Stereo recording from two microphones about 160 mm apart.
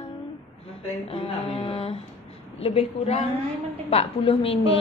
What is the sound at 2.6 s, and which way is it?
A woman's voice, 40° left (ahead or behind).